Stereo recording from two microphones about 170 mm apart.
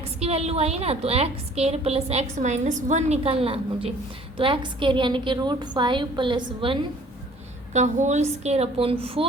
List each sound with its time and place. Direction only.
0.0 s a woman's voice: 35° right (ahead or behind)
7.7 s a woman's voice: 45° right (ahead or behind)